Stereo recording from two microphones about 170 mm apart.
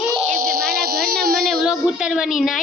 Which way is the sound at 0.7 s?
65° right (ahead or behind).